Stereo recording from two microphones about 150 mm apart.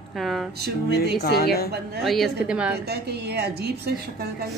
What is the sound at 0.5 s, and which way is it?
Speech, 90° right.